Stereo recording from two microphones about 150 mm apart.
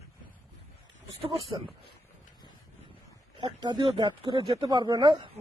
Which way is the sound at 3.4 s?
30° right (ahead or behind).